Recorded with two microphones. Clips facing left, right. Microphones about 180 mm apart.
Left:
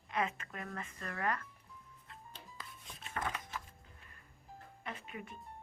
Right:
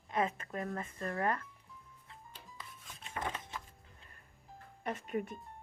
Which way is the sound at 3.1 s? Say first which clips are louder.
Even; 20° right (ahead or behind).